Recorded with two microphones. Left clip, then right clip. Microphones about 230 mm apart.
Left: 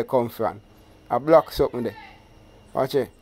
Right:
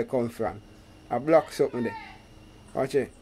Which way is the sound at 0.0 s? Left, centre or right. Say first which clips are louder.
Left 5 dB; centre.